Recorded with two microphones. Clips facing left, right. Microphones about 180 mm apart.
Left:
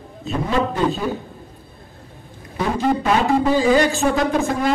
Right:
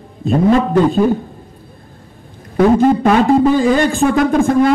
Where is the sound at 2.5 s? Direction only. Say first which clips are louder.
Right 9 dB; 50° right (ahead or behind).